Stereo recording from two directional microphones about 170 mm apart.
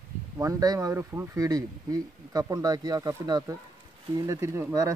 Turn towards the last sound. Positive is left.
turn(degrees=-15)  # may be behind; listen again after turning